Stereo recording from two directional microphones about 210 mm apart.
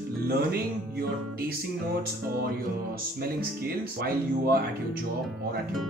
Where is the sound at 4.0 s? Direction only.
45° right (ahead or behind).